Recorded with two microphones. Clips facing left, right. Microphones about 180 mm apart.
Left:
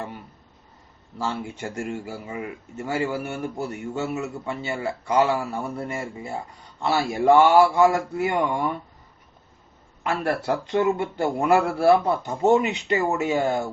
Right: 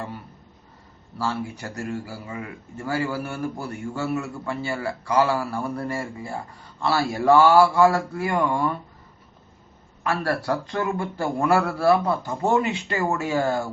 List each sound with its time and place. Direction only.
1.2 s a man's voice: 20° left (ahead or behind)
10.0 s a man's voice: 20° left (ahead or behind)